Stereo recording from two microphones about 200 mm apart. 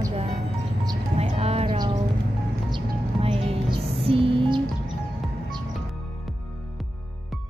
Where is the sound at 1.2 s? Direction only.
30° right (ahead or behind).